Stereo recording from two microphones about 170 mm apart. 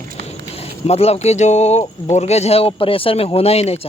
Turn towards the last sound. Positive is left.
turn(degrees=35)  # may be behind; listen again after turning